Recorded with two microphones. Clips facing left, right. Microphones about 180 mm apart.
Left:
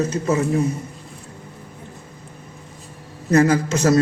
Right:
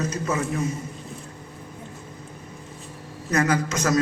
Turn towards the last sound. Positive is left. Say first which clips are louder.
# left 5 dB
turn(degrees=30)  # may be behind; listen again after turning